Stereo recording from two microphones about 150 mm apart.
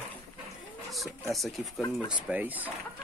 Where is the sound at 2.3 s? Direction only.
10° right (ahead or behind).